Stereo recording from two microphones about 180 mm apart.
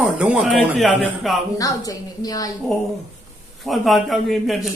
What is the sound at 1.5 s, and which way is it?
Speech, 20° left (ahead or behind).